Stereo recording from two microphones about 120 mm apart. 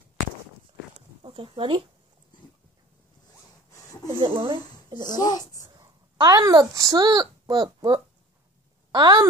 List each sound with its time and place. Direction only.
1.2 s speech: 45° right (ahead or behind)
4.1 s speech: 45° right (ahead or behind)
5.0 s speech: 35° left (ahead or behind)
5.8 s speech: 35° right (ahead or behind)